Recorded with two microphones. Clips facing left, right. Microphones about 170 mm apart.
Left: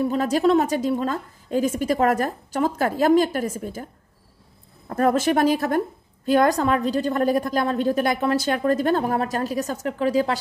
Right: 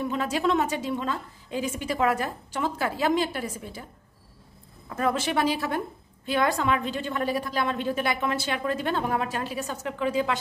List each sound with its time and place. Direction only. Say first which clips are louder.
0.0 s a woman's voice: left 6 dB; 40° left (ahead or behind)
4.8 s a woman's voice: left 7 dB; 45° left (ahead or behind)